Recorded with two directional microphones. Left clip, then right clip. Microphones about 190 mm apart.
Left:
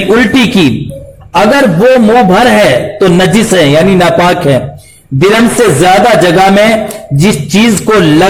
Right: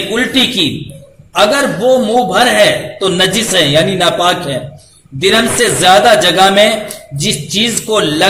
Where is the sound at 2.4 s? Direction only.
30° left (ahead or behind).